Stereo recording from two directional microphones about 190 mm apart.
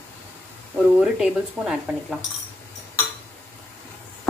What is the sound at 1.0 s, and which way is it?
A woman's voice, 5° right (ahead or behind).